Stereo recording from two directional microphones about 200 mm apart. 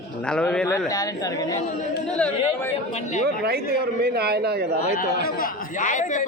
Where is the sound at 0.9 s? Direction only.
15° left (ahead or behind).